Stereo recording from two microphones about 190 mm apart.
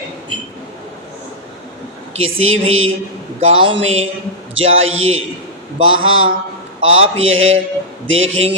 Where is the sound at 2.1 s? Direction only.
90° right.